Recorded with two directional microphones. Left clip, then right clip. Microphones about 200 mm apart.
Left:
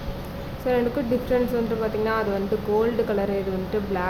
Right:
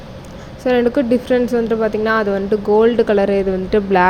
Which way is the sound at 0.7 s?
30° right (ahead or behind).